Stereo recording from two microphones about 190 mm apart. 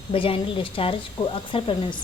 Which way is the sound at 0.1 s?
30° left (ahead or behind).